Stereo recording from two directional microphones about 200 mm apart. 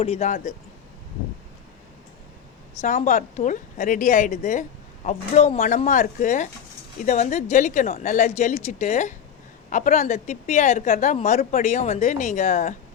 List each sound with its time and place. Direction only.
0.0 s a woman's voice: 30° left (ahead or behind)
2.8 s a woman's voice: 40° left (ahead or behind)